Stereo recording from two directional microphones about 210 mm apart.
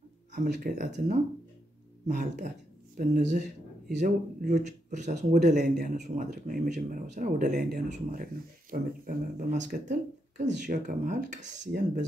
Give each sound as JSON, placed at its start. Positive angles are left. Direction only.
{"t": 0.4, "sound": "speech", "side_deg": -35}